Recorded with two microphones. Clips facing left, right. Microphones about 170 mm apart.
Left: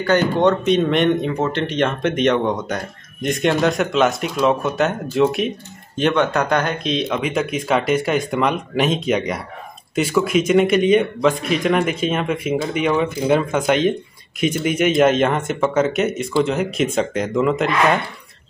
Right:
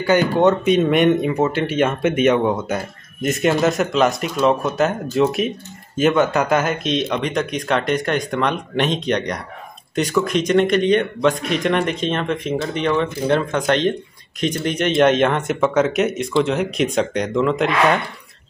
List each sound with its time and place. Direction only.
0.0 s speech: 10° right (ahead or behind)